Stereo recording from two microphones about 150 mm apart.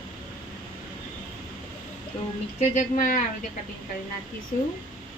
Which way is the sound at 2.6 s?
55° left (ahead or behind).